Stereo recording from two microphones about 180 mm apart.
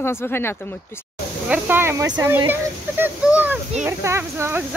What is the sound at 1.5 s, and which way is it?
Speech, 10° right (ahead or behind).